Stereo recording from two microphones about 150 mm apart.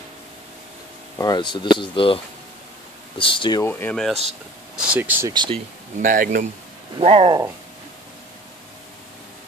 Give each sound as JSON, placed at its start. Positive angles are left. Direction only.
{"t": 1.1, "sound": "speech", "side_deg": 25}
{"t": 3.2, "sound": "speech", "side_deg": 35}
{"t": 3.9, "sound": "speech", "side_deg": 5}
{"t": 4.7, "sound": "speech", "side_deg": -10}
{"t": 5.3, "sound": "speech", "side_deg": -30}
{"t": 5.9, "sound": "speech", "side_deg": -60}
{"t": 7.0, "sound": "speech", "side_deg": -40}